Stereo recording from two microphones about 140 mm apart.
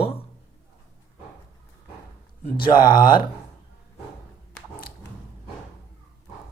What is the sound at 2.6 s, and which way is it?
Speech, 80° left.